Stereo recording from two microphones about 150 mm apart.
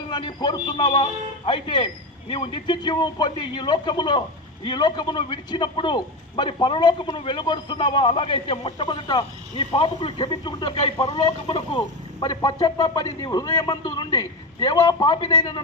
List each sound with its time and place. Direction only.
0.1 s a man's voice: 30° left (ahead or behind)